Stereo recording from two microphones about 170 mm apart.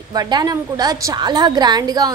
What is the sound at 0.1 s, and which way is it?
A woman's voice, 25° right (ahead or behind).